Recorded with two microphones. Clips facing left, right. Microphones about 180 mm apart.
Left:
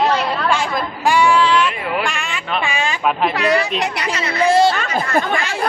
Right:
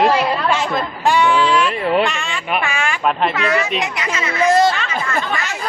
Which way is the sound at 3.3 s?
35° left (ahead or behind).